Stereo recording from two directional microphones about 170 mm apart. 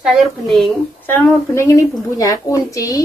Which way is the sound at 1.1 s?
10° left (ahead or behind).